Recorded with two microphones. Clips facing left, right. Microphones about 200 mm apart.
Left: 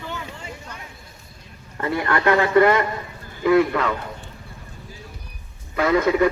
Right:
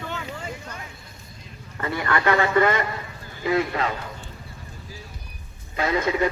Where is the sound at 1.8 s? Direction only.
55° left (ahead or behind).